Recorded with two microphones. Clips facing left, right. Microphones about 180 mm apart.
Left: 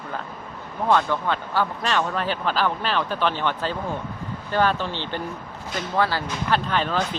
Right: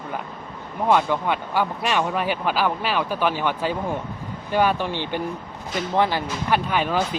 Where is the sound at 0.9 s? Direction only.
15° right (ahead or behind).